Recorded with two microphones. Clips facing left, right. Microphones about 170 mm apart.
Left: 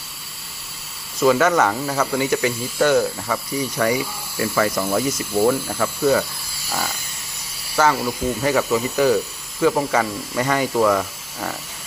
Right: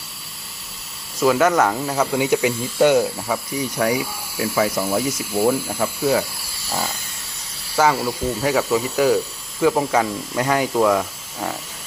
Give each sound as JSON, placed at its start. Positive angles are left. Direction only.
{"t": 1.2, "sound": "speech", "side_deg": -5}
{"t": 3.2, "sound": "speech", "side_deg": -5}
{"t": 8.0, "sound": "speech", "side_deg": -5}